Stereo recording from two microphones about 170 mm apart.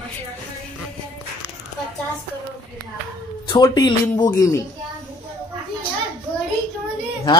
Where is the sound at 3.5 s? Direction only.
25° left (ahead or behind).